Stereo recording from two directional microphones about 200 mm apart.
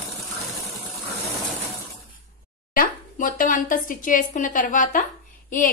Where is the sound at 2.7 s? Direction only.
45° left (ahead or behind).